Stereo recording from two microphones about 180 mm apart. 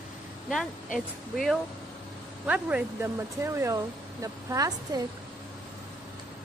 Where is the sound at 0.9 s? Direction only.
Centre (ahead or behind); by 5.0 s 20° right (ahead or behind).